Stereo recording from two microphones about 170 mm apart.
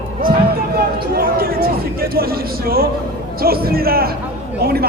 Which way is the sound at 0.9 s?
60° right (ahead or behind).